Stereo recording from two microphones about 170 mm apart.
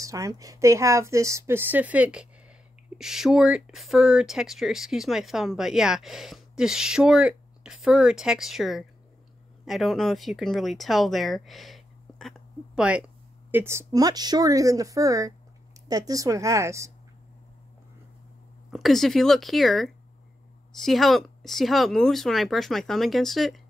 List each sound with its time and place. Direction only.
0.0 s a woman's voice: 20° right (ahead or behind)
18.7 s speech: centre (ahead or behind)